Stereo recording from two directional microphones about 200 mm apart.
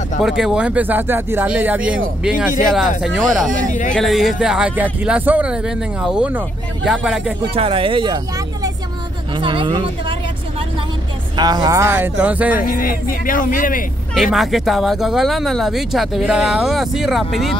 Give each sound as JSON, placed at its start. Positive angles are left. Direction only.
{"t": 0.2, "sound": "speech", "side_deg": 0}
{"t": 3.0, "sound": "speech", "side_deg": 0}
{"t": 7.5, "sound": "speech", "side_deg": -30}
{"t": 9.3, "sound": "speech", "side_deg": -25}
{"t": 11.3, "sound": "speech", "side_deg": -20}
{"t": 12.6, "sound": "speech", "side_deg": 45}
{"t": 14.1, "sound": "speech", "side_deg": 0}